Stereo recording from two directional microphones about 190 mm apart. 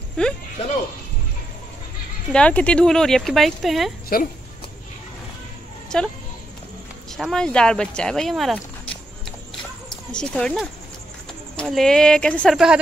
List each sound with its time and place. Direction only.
0.2 s speech: 5° left (ahead or behind)
2.3 s speech: 5° left (ahead or behind)
4.1 s speech: 50° left (ahead or behind)
5.9 s speech: 5° left (ahead or behind)
7.2 s speech: centre (ahead or behind)
10.1 s speech: 5° left (ahead or behind)